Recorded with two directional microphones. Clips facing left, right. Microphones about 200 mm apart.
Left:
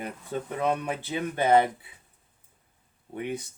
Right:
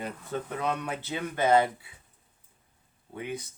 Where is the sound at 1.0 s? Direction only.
15° left (ahead or behind).